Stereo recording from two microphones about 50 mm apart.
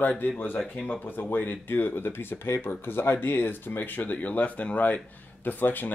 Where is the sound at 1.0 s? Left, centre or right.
Left.